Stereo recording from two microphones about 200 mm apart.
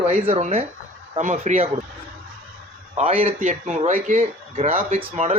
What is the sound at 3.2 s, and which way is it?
Speech, 35° right (ahead or behind).